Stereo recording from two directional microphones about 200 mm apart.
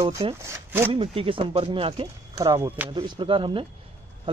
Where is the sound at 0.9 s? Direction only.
25° right (ahead or behind); by 2.9 s 10° right (ahead or behind).